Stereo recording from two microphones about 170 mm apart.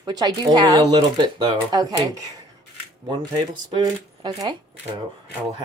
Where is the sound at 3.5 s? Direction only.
25° right (ahead or behind).